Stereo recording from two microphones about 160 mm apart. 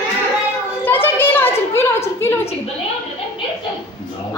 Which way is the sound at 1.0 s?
15° left (ahead or behind).